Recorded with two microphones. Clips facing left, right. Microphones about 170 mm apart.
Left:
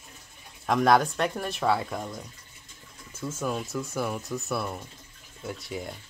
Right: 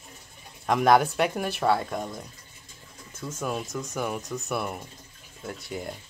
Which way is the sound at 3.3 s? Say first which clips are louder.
Even; centre (ahead or behind).